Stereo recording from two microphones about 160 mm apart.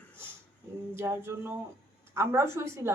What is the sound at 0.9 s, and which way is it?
Speech, 15° right (ahead or behind).